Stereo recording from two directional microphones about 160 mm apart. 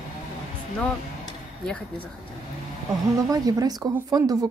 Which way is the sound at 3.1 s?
20° right (ahead or behind).